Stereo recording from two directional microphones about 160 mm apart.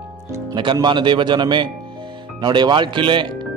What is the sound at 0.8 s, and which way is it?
A man's voice, 30° right (ahead or behind).